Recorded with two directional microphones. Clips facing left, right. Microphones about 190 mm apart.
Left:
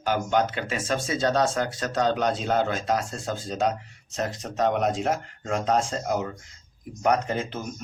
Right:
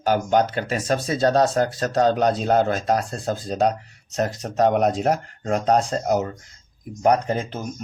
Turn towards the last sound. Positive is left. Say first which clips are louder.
# right 4 dB
turn(degrees=-40)  # may be behind; listen again after turning